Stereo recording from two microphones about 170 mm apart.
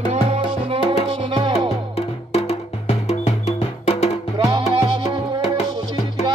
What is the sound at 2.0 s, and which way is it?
Music, 35° left (ahead or behind).